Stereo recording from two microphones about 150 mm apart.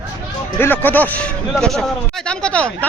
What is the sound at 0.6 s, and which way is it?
A man's voice, 10° left (ahead or behind).